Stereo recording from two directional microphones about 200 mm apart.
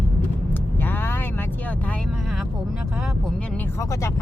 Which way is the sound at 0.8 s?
10° left (ahead or behind).